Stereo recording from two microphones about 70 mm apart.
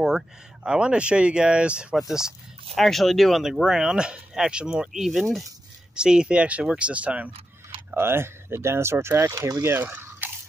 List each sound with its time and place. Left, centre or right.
0.7 s speech: centre
7.9 s speech: right